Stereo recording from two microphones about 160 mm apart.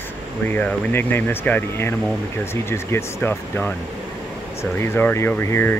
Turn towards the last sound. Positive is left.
turn(degrees=15)  # may be behind; listen again after turning